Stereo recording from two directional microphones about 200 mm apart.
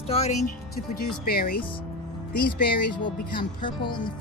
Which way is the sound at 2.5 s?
25° left (ahead or behind).